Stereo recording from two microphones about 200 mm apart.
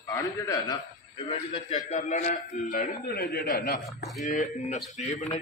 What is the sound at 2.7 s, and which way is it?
Speech, 45° left (ahead or behind).